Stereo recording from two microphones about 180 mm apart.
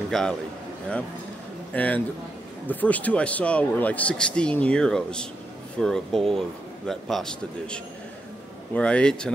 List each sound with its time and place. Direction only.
0.1 s a man's voice: 5° left (ahead or behind)
1.7 s a man's voice: 10° left (ahead or behind)